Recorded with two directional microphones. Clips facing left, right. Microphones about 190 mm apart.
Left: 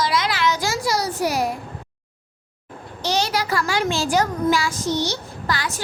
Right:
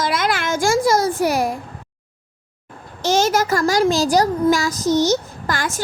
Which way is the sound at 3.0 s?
45° right (ahead or behind).